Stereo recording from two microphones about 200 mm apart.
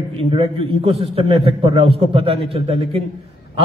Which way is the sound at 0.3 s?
30° right (ahead or behind).